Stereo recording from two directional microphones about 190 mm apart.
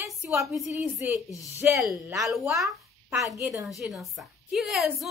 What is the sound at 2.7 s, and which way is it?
A child's voice, 15° right (ahead or behind).